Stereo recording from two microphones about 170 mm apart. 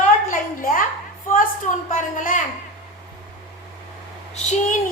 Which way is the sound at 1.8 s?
50° left (ahead or behind).